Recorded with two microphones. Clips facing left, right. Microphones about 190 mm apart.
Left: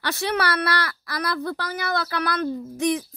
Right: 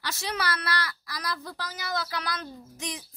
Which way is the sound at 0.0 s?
60° left (ahead or behind).